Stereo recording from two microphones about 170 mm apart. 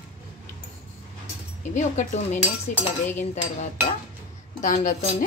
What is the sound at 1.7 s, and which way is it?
Speech, 45° left (ahead or behind).